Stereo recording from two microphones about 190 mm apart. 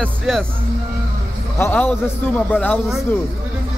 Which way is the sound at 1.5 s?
10° left (ahead or behind).